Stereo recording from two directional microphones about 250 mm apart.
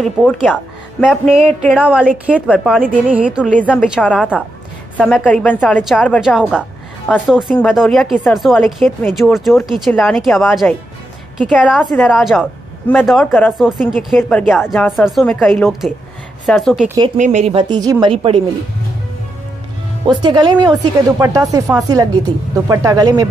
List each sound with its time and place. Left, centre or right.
0.0 s a woman's voice: centre
17.2 s speech: right
20.1 s speech: centre